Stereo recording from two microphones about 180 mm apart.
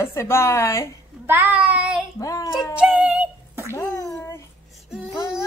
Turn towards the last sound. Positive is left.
turn(degrees=-5)  # may be behind; listen again after turning